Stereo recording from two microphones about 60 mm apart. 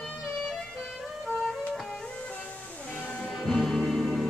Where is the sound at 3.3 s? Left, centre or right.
Centre.